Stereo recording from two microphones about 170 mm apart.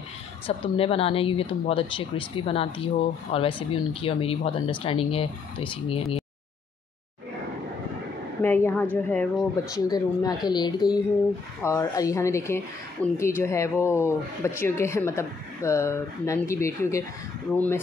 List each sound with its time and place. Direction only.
0.5 s speech: 35° left (ahead or behind)
8.4 s speech: 15° left (ahead or behind)
9.8 s speech: 20° left (ahead or behind)